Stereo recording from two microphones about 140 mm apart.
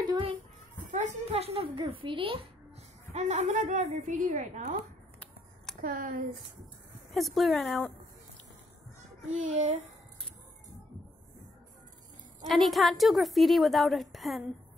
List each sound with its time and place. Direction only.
0.0 s a sound: 35° right (ahead or behind)
0.8 s a woman's voice: 60° right (ahead or behind); by 2.4 s 40° right (ahead or behind)
3.2 s a woman's voice: 55° right (ahead or behind)
5.8 s speech: 80° right
7.2 s a woman's voice: centre (ahead or behind)
9.3 s a child's voice: 55° right (ahead or behind)
12.4 s a woman's voice: centre (ahead or behind)